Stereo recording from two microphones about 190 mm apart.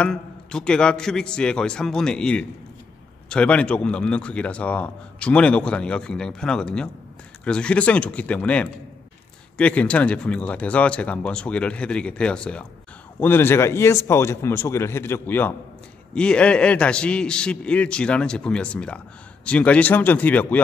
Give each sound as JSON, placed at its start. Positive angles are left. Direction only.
{"t": 0.0, "sound": "a man's voice", "side_deg": 5}